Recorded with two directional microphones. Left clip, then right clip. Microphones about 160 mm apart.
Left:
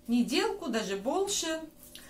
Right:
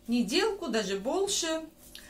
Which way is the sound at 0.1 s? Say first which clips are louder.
Right 1 dB; 20° right (ahead or behind).